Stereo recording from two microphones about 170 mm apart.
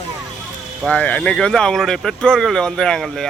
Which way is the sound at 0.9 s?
5° left (ahead or behind).